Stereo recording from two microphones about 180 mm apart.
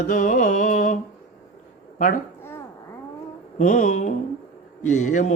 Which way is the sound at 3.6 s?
40° left (ahead or behind).